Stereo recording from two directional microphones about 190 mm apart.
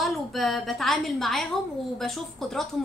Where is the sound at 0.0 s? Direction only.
Centre (ahead or behind).